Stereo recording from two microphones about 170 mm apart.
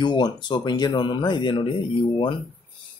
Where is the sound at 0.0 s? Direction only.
25° left (ahead or behind).